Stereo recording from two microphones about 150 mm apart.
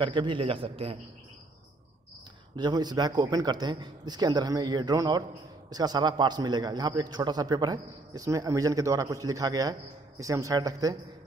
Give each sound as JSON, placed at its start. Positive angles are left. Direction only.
{"t": 0.0, "sound": "a man's voice", "side_deg": -30}
{"t": 2.5, "sound": "a man's voice", "side_deg": -30}